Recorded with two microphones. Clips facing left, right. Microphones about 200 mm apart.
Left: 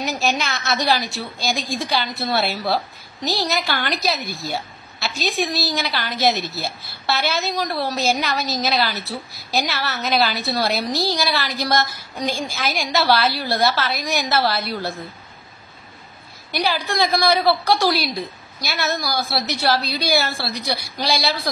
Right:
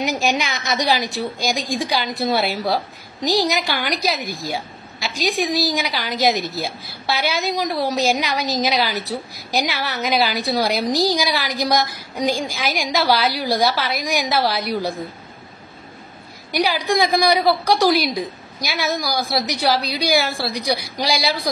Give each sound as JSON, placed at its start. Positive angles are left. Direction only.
{"t": 0.0, "sound": "a woman's voice", "side_deg": -15}
{"t": 16.5, "sound": "a woman's voice", "side_deg": -15}